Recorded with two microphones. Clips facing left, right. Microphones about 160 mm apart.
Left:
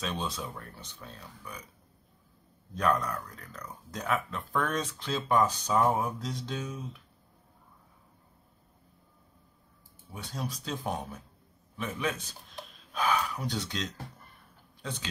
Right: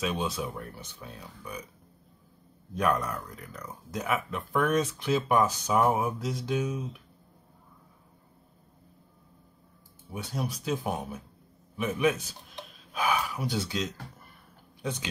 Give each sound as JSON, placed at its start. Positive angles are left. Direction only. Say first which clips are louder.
{"t": 0.0, "sound": "speech", "louder": "right 4 dB", "side_deg": -10}
{"t": 2.7, "sound": "speech", "louder": "right 1 dB", "side_deg": -15}
{"t": 3.0, "sound": "speech", "louder": "right 1 dB", "side_deg": -5}
{"t": 4.6, "sound": "speech", "louder": "right 5 dB", "side_deg": -15}
{"t": 5.9, "sound": "mantra", "louder": "right 2 dB", "side_deg": 0}
{"t": 10.1, "sound": "speech", "louder": "right 4 dB", "side_deg": -15}
{"t": 12.5, "sound": "gasp", "louder": "right 1 dB", "side_deg": 0}
{"t": 13.4, "sound": "speech", "louder": "right 4 dB", "side_deg": -5}